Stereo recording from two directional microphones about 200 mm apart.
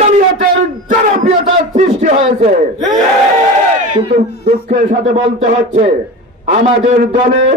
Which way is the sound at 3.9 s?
40° right (ahead or behind).